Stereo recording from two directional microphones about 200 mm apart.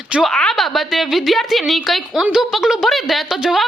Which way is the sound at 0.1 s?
Centre (ahead or behind).